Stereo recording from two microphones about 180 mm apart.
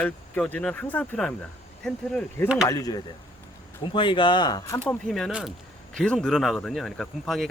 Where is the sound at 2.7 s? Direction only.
20° left (ahead or behind); by 7.5 s centre (ahead or behind).